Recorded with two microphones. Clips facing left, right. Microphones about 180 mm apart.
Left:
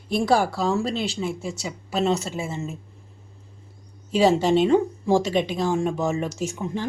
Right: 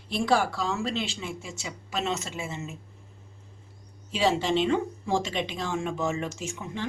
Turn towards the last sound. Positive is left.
turn(degrees=40)  # may be behind; listen again after turning